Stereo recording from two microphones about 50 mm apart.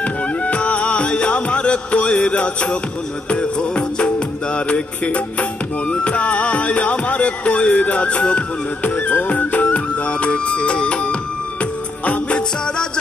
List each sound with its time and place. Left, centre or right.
0.0 s music: left